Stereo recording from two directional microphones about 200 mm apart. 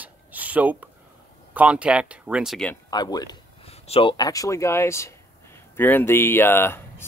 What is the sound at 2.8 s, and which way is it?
Speech, 20° left (ahead or behind).